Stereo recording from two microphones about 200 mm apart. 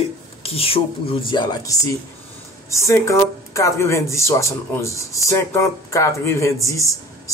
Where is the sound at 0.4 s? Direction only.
30° left (ahead or behind).